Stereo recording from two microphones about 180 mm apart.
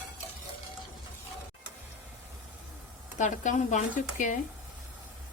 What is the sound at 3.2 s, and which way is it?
Speech, 45° left (ahead or behind).